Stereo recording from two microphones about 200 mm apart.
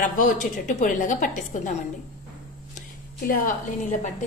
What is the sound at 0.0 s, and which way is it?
A woman's voice, 40° left (ahead or behind).